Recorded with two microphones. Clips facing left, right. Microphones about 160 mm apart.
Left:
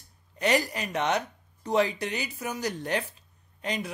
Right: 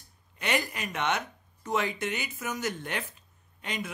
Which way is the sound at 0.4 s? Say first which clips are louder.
Left 5 dB; 35° left (ahead or behind).